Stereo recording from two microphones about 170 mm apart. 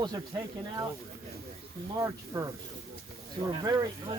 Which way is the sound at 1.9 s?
20° right (ahead or behind).